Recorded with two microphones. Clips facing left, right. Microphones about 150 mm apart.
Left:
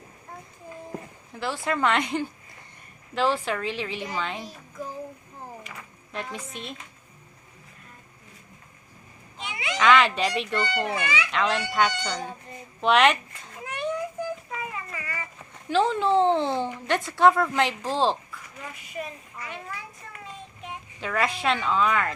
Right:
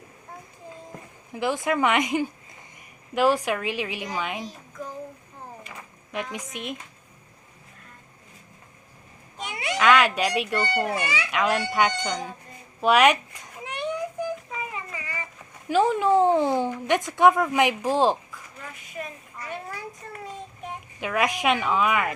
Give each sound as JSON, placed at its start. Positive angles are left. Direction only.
{"t": 1.3, "sound": "speech", "side_deg": -15}
{"t": 6.3, "sound": "speech", "side_deg": -15}
{"t": 9.4, "sound": "cat", "side_deg": -45}
{"t": 9.7, "sound": "speech", "side_deg": -5}
{"t": 11.0, "sound": "a child's voice", "side_deg": -35}
{"t": 11.3, "sound": "speech", "side_deg": -10}
{"t": 12.8, "sound": "a sound", "side_deg": -10}
{"t": 15.7, "sound": "speech", "side_deg": -10}
{"t": 19.0, "sound": "a woman's voice", "side_deg": 5}
{"t": 19.4, "sound": "a child's voice", "side_deg": -40}
{"t": 21.0, "sound": "speech", "side_deg": -15}